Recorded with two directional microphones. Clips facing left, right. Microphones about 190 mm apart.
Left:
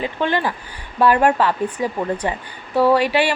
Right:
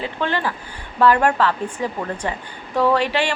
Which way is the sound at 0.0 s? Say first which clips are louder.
Left 3 dB; 15° left (ahead or behind).